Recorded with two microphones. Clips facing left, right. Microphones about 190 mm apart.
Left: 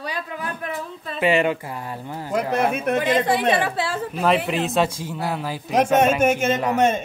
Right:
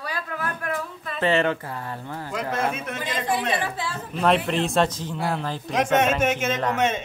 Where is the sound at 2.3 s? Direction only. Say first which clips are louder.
Left 5 dB; 55° left (ahead or behind); by 3.9 s 75° left (ahead or behind).